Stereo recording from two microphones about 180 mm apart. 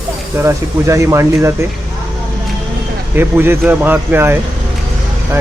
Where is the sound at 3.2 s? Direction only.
10° right (ahead or behind).